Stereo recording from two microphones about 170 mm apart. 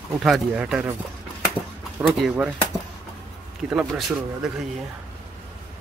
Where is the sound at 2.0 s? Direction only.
Centre (ahead or behind).